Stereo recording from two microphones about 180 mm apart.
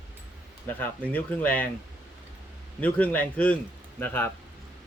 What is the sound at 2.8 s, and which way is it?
Speech, 10° left (ahead or behind).